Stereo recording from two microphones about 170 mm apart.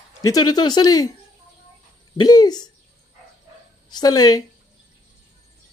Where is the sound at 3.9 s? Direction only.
25° left (ahead or behind).